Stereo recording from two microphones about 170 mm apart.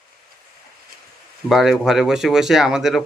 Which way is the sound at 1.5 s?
Centre (ahead or behind).